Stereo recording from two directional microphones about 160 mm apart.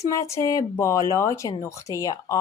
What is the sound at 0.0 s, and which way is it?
Speech, 20° left (ahead or behind).